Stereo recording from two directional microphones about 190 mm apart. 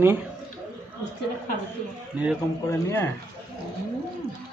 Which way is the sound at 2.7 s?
15° left (ahead or behind).